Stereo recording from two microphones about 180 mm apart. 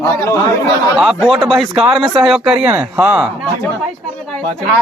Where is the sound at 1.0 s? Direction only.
Centre (ahead or behind).